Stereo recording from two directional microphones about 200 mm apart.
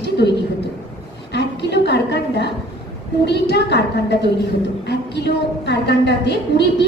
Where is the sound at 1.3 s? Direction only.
60° left (ahead or behind).